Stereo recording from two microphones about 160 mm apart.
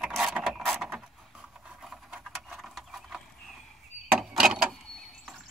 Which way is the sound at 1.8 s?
5° right (ahead or behind).